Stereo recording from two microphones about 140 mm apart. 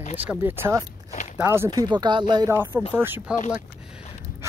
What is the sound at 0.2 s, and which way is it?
Speech, 15° right (ahead or behind).